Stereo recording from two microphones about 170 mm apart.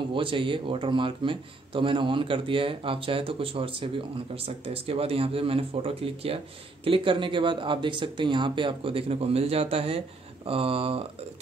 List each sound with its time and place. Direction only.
0.1 s speech: 30° right (ahead or behind)